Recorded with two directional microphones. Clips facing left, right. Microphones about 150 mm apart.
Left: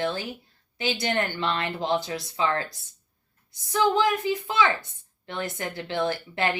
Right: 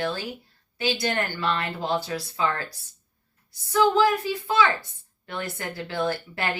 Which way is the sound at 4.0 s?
20° left (ahead or behind).